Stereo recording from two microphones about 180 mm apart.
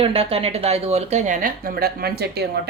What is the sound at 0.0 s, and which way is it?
A woman's voice, 30° right (ahead or behind).